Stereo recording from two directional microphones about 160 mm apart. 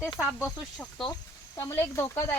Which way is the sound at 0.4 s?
Centre (ahead or behind).